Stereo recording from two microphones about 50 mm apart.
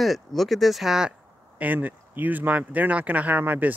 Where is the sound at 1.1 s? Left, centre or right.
Right.